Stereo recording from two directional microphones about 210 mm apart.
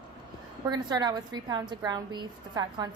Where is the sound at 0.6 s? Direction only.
20° right (ahead or behind).